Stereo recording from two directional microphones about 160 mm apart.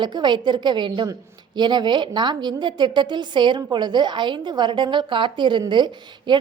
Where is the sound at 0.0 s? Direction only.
30° right (ahead or behind).